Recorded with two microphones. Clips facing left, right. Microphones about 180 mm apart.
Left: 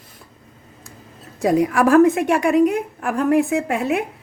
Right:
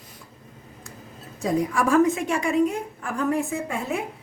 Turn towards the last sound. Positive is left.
turn(degrees=75)  # may be behind; listen again after turning